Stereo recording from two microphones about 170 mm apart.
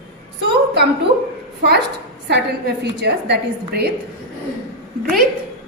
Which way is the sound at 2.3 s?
80° right.